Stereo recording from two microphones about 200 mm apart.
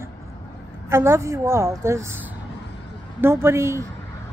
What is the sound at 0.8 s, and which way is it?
Speech, 10° right (ahead or behind).